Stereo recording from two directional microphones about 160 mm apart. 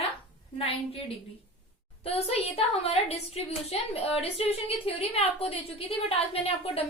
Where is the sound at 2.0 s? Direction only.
40° left (ahead or behind).